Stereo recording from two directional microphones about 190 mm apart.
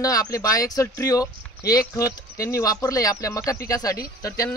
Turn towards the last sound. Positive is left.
turn(degrees=15)  # may be behind; listen again after turning